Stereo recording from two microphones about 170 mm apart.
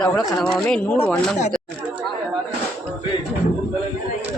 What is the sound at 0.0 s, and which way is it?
Speech, 5° left (ahead or behind).